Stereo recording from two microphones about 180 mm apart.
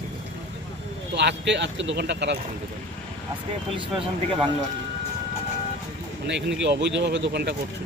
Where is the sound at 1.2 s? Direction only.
75° right (ahead or behind).